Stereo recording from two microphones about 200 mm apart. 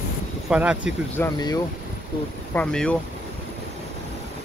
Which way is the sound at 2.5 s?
5° left (ahead or behind).